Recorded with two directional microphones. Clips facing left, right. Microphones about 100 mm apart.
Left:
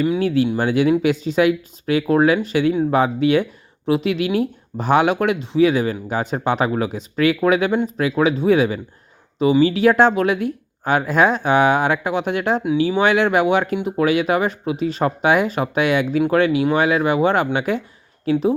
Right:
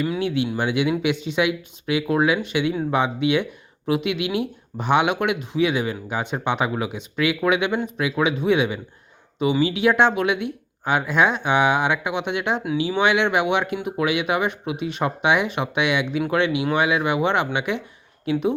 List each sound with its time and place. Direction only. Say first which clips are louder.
0.2 s speech: left 5 dB; 40° left (ahead or behind)